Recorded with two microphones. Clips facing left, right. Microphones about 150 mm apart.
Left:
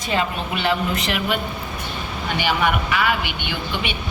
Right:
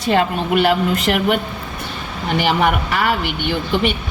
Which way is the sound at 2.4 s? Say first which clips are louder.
Right 4 dB; 45° right (ahead or behind).